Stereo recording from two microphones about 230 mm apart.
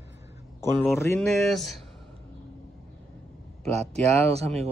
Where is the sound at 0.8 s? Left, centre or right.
Centre.